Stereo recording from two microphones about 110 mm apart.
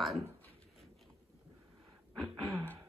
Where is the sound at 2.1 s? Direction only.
40° right (ahead or behind).